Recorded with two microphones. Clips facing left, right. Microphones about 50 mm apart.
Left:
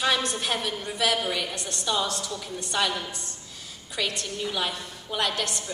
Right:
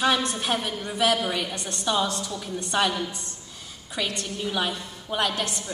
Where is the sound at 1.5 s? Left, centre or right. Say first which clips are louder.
Right 2 dB; right.